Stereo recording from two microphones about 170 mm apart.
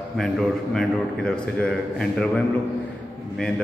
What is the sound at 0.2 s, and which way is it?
A man's voice, 5° left (ahead or behind).